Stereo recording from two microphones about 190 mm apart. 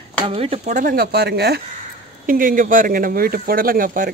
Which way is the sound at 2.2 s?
45° right (ahead or behind).